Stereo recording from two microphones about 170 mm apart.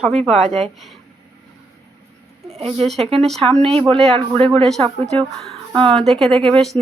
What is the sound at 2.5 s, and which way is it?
Speech, 35° right (ahead or behind).